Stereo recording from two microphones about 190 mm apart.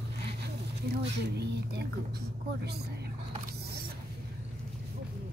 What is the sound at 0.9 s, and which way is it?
Speech, 60° right (ahead or behind).